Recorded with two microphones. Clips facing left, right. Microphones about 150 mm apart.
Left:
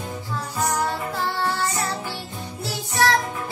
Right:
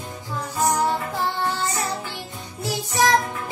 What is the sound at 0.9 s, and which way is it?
Music, 15° right (ahead or behind).